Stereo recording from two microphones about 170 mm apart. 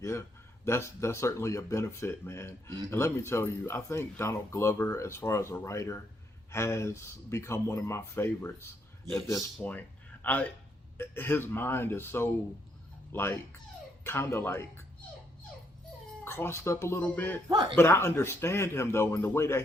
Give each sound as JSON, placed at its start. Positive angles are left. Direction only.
{"t": 0.0, "sound": "speech", "side_deg": 15}
{"t": 16.2, "sound": "speech", "side_deg": 15}
{"t": 17.5, "sound": "a man's voice", "side_deg": -25}
{"t": 17.7, "sound": "speech", "side_deg": 15}